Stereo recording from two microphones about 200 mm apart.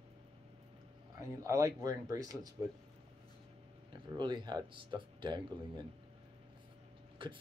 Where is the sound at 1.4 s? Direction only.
15° right (ahead or behind).